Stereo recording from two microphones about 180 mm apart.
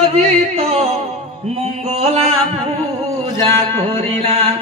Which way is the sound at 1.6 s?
35° right (ahead or behind).